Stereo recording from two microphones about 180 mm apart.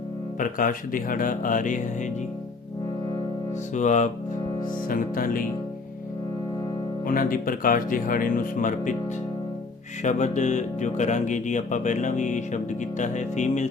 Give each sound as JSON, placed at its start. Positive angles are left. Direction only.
{"t": 0.3, "sound": "speech", "side_deg": 50}
{"t": 3.8, "sound": "speech", "side_deg": 40}
{"t": 7.1, "sound": "speech", "side_deg": 50}
{"t": 10.0, "sound": "speech", "side_deg": 40}